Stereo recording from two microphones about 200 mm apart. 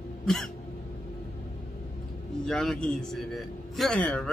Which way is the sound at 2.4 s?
Centre (ahead or behind).